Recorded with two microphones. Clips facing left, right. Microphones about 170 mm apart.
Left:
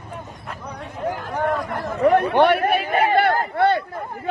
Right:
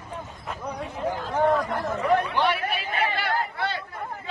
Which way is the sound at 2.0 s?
60° left (ahead or behind).